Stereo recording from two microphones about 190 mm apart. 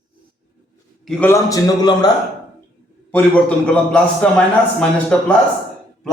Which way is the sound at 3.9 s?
5° left (ahead or behind).